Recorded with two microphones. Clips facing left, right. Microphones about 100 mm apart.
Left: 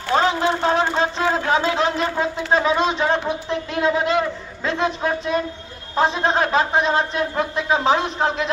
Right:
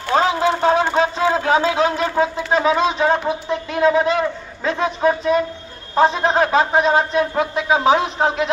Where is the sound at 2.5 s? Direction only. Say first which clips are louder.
Right 2 dB; 5° right (ahead or behind).